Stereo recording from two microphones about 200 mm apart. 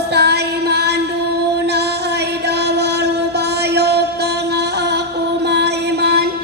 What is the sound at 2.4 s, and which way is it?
Music, 55° right (ahead or behind).